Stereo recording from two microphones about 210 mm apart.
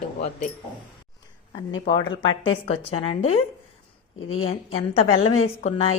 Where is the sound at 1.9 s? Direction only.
20° left (ahead or behind).